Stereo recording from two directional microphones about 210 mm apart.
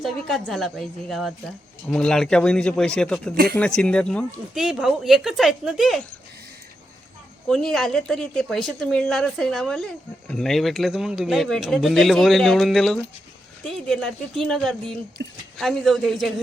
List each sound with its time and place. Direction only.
0.0 s a woman's voice: centre (ahead or behind)
7.4 s a woman's voice: centre (ahead or behind)
15.2 s speech: 55° right (ahead or behind)
15.5 s a woman's voice: centre (ahead or behind)